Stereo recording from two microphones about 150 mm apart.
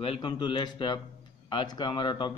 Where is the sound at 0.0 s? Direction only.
35° left (ahead or behind).